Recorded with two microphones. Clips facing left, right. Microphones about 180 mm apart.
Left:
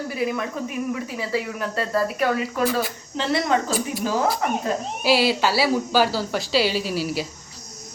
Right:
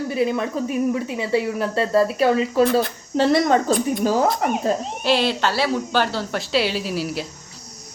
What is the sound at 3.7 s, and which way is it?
Speech, 5° left (ahead or behind).